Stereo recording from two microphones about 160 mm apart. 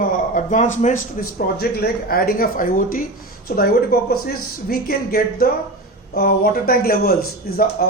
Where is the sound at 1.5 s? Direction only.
75° left (ahead or behind).